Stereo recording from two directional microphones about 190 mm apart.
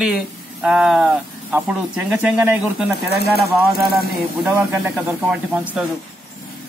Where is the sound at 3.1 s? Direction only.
55° left (ahead or behind).